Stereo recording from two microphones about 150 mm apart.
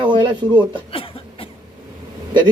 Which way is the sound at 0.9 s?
40° left (ahead or behind).